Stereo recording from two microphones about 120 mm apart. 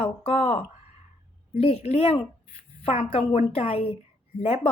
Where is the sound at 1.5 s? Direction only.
60° left (ahead or behind).